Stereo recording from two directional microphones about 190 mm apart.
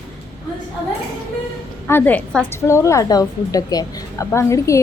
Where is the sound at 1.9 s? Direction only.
10° left (ahead or behind).